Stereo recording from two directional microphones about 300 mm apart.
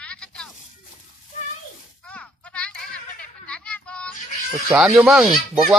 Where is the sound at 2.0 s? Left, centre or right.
Centre.